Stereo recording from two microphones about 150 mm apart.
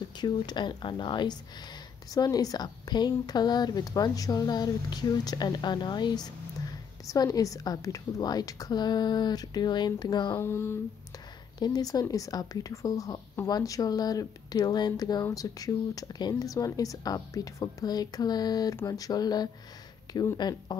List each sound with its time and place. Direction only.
0.2 s speech: 30° left (ahead or behind)
10.4 s a sound: 15° left (ahead or behind)
11.6 s speech: 25° left (ahead or behind)